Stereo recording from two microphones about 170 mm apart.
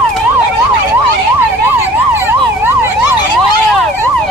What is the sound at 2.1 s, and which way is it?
Emergency vehicle, 15° right (ahead or behind).